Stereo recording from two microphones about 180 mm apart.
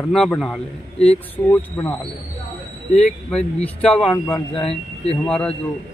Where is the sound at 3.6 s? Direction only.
5° left (ahead or behind).